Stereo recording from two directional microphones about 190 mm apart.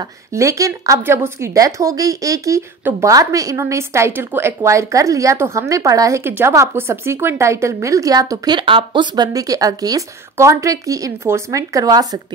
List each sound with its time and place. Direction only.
0.0 s a woman's voice: 15° right (ahead or behind)